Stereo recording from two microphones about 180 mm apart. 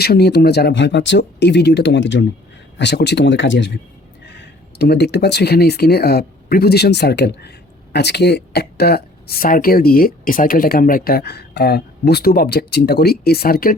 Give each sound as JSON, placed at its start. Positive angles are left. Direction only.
{"t": 0.0, "sound": "speech", "side_deg": 60}
{"t": 2.7, "sound": "speech", "side_deg": 70}
{"t": 4.8, "sound": "speech", "side_deg": 65}